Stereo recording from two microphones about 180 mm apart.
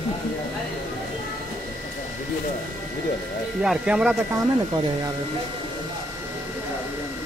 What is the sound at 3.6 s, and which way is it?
Speech, 5° right (ahead or behind).